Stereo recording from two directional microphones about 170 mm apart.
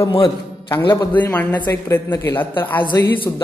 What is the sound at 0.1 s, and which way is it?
Speech, 30° left (ahead or behind).